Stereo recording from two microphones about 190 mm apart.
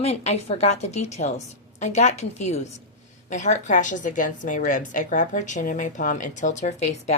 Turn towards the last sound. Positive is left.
turn(degrees=35)  # may be behind; listen again after turning